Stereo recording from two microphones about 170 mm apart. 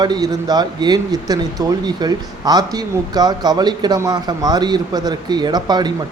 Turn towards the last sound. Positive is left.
turn(degrees=-25)  # may be behind; listen again after turning